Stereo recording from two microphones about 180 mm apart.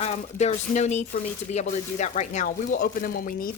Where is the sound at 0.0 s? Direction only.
40° left (ahead or behind).